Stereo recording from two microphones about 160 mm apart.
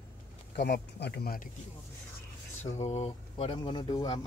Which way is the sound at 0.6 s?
90° left.